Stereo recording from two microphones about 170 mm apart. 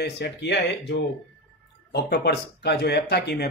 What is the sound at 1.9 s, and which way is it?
Speech, 75° left (ahead or behind).